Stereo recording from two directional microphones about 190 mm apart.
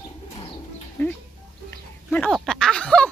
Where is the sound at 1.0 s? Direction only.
10° left (ahead or behind).